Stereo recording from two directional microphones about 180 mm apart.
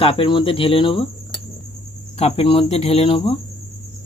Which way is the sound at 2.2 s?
35° left (ahead or behind).